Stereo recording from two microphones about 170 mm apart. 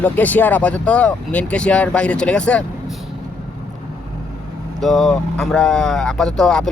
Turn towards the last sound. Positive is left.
turn(degrees=5)  # may be behind; listen again after turning